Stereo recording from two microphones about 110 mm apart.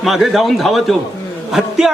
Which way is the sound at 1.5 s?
5° right (ahead or behind).